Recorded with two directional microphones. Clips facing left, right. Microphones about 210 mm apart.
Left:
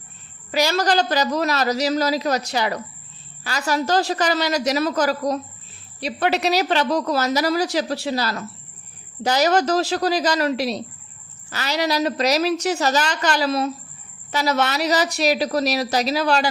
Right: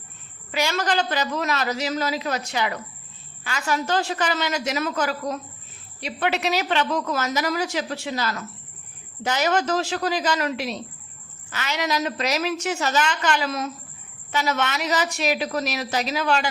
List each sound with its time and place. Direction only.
0.5 s a woman's voice: 40° left (ahead or behind)